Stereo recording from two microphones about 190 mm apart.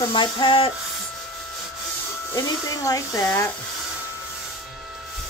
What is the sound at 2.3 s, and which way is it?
A woman's voice, 15° left (ahead or behind).